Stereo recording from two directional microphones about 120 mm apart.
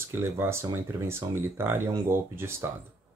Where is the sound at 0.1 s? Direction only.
20° right (ahead or behind).